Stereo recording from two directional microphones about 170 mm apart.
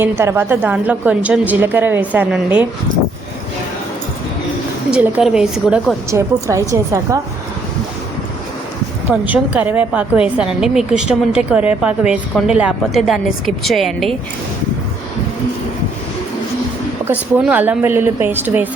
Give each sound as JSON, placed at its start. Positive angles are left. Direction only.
{"t": 0.0, "sound": "a woman's voice", "side_deg": -15}
{"t": 4.9, "sound": "a woman's voice", "side_deg": -5}
{"t": 9.0, "sound": "a woman's voice", "side_deg": -10}
{"t": 17.1, "sound": "a woman's voice", "side_deg": -10}